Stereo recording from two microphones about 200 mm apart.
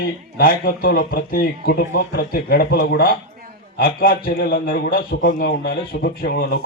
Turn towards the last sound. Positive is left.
turn(degrees=50)  # may be behind; listen again after turning